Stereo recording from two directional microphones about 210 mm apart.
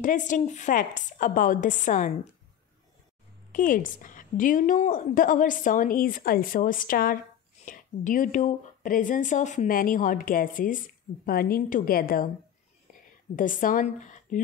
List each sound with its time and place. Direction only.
0.0 s a woman's voice: 35° left (ahead or behind)
3.5 s a woman's voice: 40° left (ahead or behind)
13.4 s a woman's voice: 40° left (ahead or behind)